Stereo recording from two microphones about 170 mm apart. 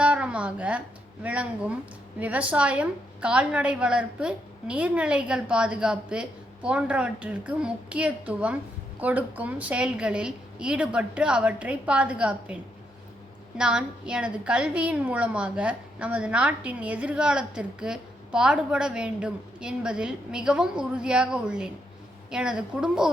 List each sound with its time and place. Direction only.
0.0 s a sound: 5° right (ahead or behind)
1.2 s a woman's voice: 5° right (ahead or behind)
13.6 s a woman's voice: 5° right (ahead or behind)